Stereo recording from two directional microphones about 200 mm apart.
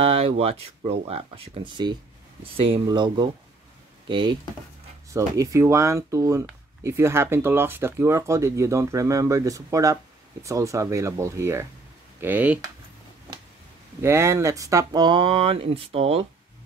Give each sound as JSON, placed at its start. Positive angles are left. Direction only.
{"t": 0.0, "sound": "speech", "side_deg": -30}
{"t": 14.0, "sound": "speech", "side_deg": -15}